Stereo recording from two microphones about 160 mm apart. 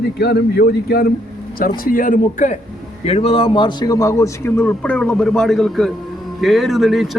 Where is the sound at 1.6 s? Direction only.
65° left (ahead or behind).